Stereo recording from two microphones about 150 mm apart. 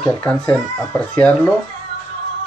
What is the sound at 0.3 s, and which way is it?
Speech, 10° left (ahead or behind).